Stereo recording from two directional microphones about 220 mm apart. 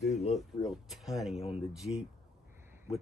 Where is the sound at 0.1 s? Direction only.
30° left (ahead or behind).